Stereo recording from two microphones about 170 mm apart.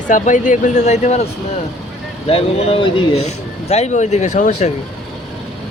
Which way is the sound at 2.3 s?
35° left (ahead or behind).